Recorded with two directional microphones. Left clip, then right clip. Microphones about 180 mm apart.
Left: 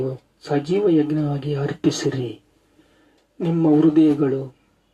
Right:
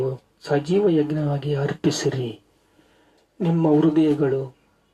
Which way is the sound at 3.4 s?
30° left (ahead or behind).